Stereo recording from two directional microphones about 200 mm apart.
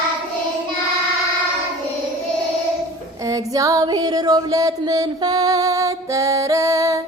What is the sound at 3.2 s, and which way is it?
Female singing, 15° right (ahead or behind).